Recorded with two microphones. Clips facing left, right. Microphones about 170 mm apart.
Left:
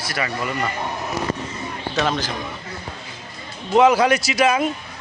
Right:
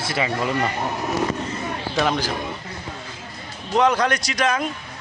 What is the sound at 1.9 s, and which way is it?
Speech, 10° right (ahead or behind).